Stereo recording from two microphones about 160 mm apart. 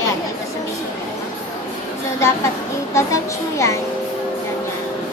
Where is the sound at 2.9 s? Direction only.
20° left (ahead or behind).